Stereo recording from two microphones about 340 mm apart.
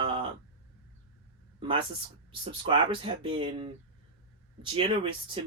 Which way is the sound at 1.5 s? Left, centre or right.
Centre.